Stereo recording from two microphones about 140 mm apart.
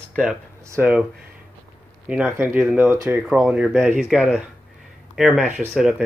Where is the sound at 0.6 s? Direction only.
15° right (ahead or behind).